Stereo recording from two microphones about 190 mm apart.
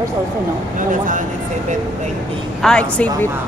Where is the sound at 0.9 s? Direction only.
45° right (ahead or behind).